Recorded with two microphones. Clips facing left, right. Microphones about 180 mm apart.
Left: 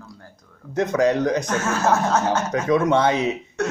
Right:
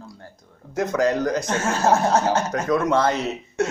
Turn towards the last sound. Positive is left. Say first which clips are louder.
# left 2 dB
turn(degrees=0)  # may be behind; listen again after turning